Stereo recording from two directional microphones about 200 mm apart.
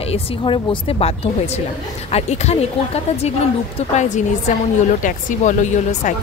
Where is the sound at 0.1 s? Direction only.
25° left (ahead or behind).